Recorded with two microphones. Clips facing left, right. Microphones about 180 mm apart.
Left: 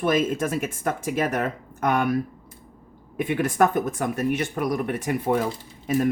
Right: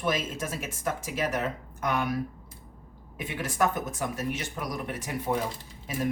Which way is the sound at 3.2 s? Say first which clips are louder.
Left 8 dB; 55° left (ahead or behind).